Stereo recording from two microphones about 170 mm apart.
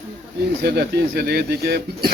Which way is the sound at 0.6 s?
70° right (ahead or behind).